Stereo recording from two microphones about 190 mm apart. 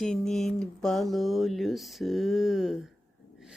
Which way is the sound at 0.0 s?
Centre (ahead or behind).